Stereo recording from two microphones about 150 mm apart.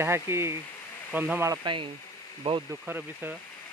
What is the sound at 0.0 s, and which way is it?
Speech, 15° right (ahead or behind).